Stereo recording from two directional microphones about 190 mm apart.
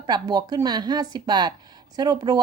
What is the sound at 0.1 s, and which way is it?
Speech, 20° right (ahead or behind).